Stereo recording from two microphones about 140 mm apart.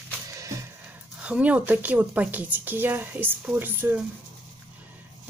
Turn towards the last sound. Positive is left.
turn(degrees=-10)  # may be behind; listen again after turning